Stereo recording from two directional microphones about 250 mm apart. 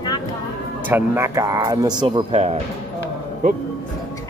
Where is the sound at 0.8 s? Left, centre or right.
Centre.